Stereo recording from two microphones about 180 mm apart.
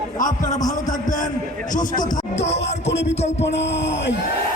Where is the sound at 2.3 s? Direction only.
35° left (ahead or behind).